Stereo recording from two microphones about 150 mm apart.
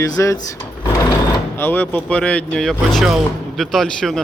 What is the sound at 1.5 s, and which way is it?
Speech, 15° left (ahead or behind).